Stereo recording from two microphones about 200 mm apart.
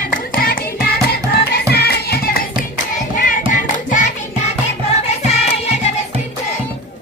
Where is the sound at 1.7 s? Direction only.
55° left (ahead or behind).